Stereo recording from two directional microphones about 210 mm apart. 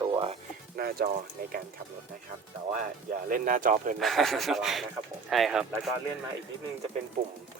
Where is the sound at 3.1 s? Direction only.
40° right (ahead or behind).